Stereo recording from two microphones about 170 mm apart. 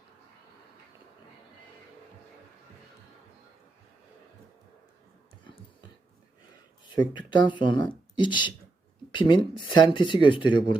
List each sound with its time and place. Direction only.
6.8 s speech: 25° left (ahead or behind)